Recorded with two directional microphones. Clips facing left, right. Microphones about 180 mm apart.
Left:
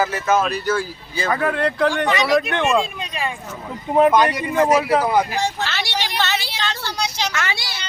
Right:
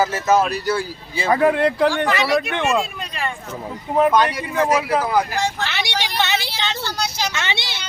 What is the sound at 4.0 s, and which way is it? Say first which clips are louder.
Speech: left 2 dB; 5° left (ahead or behind).